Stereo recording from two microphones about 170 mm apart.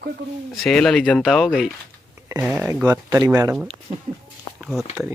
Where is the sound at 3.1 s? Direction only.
20° right (ahead or behind).